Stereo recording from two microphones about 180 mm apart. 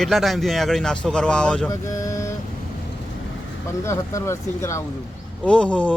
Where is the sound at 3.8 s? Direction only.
15° left (ahead or behind).